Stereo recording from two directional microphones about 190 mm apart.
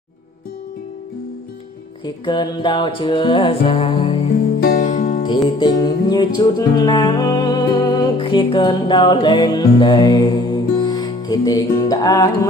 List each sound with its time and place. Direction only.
2.0 s music: 25° left (ahead or behind)
4.6 s music: 50° left (ahead or behind)
5.6 s music: 20° left (ahead or behind)